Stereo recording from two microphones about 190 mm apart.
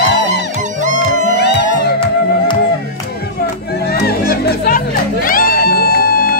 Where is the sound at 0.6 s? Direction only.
40° right (ahead or behind).